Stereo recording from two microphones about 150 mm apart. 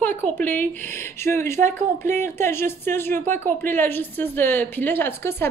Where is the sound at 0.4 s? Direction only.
10° left (ahead or behind).